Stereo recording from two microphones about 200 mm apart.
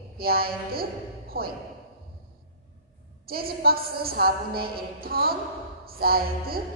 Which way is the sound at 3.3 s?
50° right (ahead or behind).